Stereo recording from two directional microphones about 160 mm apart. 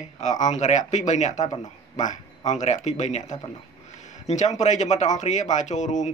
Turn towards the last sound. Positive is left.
turn(degrees=50)  # may be behind; listen again after turning